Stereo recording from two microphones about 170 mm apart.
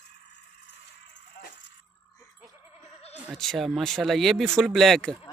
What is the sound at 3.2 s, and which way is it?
Speech, centre (ahead or behind).